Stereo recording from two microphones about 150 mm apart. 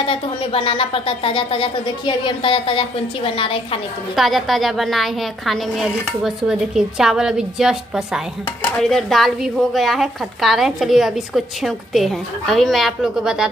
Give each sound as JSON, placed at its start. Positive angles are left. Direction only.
{"t": 0.0, "sound": "speech", "side_deg": 40}
{"t": 4.1, "sound": "a woman's voice", "side_deg": 0}